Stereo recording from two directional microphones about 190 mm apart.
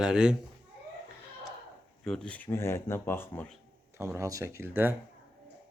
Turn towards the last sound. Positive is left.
turn(degrees=-10)  # may be behind; listen again after turning